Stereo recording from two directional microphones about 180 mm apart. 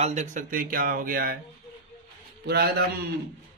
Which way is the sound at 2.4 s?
65° right (ahead or behind).